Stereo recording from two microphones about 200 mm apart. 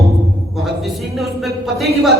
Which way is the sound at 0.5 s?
Centre (ahead or behind).